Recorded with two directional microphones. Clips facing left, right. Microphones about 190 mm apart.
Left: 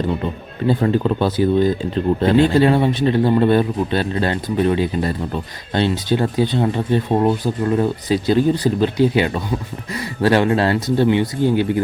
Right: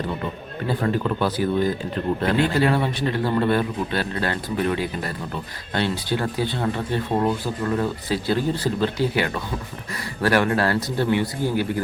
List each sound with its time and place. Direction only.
0.7 s speech: 25° left (ahead or behind)